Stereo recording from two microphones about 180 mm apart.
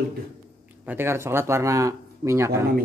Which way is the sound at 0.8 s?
15° right (ahead or behind).